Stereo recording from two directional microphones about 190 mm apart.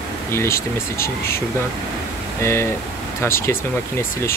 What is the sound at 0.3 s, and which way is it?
Speech, 15° left (ahead or behind).